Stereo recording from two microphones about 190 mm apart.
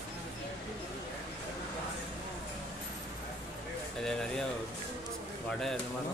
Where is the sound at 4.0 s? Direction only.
5° left (ahead or behind).